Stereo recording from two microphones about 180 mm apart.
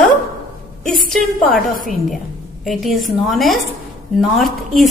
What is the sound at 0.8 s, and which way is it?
Speech, centre (ahead or behind).